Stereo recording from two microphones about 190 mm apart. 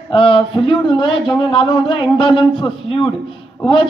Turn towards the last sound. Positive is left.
turn(degrees=25)  # may be behind; listen again after turning